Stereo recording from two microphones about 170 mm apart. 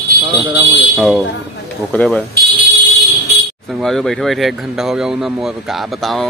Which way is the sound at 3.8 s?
Centre (ahead or behind).